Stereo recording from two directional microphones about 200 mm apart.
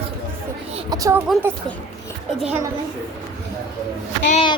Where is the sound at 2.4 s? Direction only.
5° right (ahead or behind).